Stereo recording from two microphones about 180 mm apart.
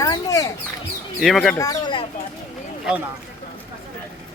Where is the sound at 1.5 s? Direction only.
20° left (ahead or behind).